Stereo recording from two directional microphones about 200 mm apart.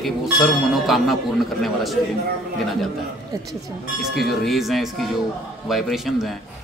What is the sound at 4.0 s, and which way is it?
Speech, centre (ahead or behind).